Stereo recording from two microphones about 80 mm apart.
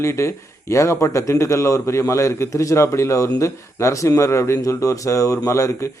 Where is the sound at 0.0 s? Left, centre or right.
Left.